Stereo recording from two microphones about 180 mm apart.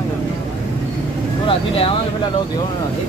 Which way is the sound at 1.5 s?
30° left (ahead or behind).